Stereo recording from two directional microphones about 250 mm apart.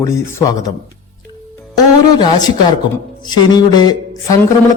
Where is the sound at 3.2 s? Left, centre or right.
Centre.